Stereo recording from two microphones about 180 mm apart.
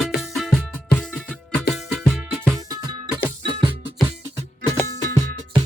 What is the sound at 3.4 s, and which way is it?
Music, 25° right (ahead or behind).